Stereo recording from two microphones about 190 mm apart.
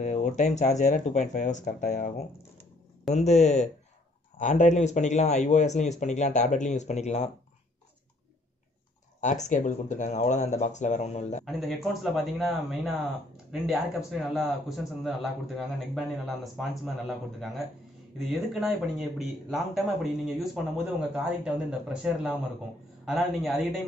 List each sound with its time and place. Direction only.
0.0 s a man's voice: 40° left (ahead or behind)
9.2 s a man's voice: 40° left (ahead or behind)
11.4 s a man's voice: centre (ahead or behind)